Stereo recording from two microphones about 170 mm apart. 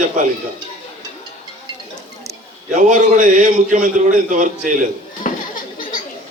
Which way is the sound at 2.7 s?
50° right (ahead or behind).